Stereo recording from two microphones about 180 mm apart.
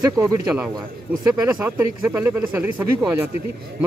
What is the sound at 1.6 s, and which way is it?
Speech, 10° right (ahead or behind).